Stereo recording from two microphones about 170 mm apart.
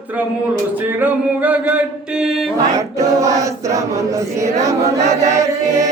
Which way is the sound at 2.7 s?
20° right (ahead or behind).